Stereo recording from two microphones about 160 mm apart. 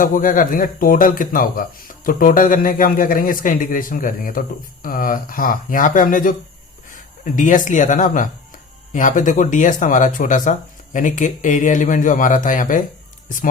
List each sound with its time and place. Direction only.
0.0 s a man's voice: 60° left (ahead or behind)
7.3 s speech: 55° left (ahead or behind)